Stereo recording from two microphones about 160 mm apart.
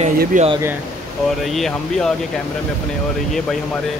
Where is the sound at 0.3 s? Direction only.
50° right (ahead or behind).